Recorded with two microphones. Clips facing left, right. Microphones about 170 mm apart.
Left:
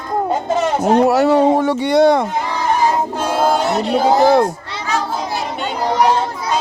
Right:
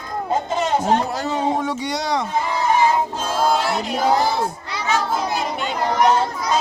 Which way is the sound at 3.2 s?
60° left (ahead or behind).